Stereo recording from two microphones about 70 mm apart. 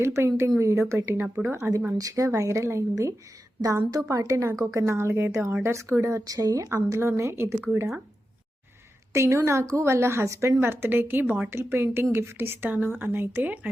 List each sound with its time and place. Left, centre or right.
0.0 s speech: right
2.0 s a woman's voice: right
7.2 s speech: right
9.1 s speech: right